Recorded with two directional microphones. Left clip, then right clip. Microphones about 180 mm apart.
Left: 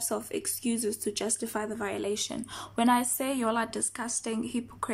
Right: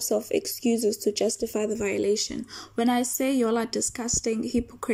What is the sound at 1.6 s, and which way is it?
A woman's voice, 10° right (ahead or behind).